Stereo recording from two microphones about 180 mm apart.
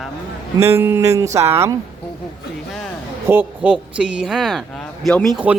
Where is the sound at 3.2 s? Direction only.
10° right (ahead or behind).